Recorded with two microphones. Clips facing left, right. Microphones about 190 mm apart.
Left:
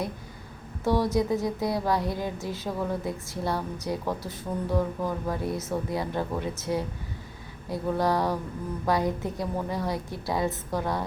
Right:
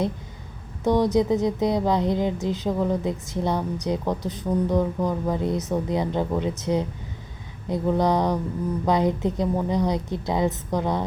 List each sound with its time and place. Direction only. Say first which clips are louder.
0.9 s a woman's voice: right 4 dB; 20° right (ahead or behind)